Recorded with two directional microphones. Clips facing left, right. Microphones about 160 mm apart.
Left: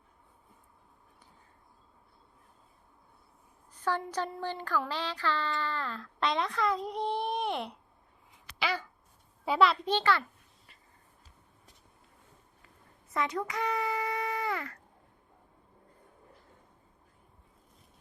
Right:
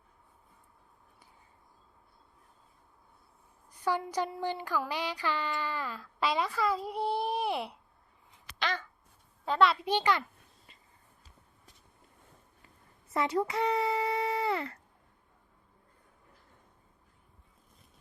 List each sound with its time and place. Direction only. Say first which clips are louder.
3.7 s speech: right 1 dB; 10° right (ahead or behind)
8.5 s a sound: left 1 dB; 10° left (ahead or behind)
9.5 s a child's voice: left 1 dB; centre (ahead or behind)
9.8 s speech: even; 15° right (ahead or behind)
13.1 s speech: right 3 dB; 30° right (ahead or behind)